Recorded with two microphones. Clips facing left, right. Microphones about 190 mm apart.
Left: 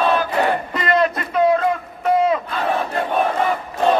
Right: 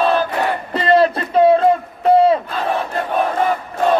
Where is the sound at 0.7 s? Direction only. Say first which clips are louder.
Right 5 dB; 30° right (ahead or behind).